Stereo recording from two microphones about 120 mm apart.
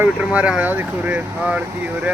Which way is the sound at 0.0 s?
10° right (ahead or behind).